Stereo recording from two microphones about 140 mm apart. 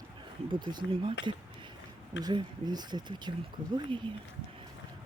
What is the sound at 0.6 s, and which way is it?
Speech, 35° right (ahead or behind).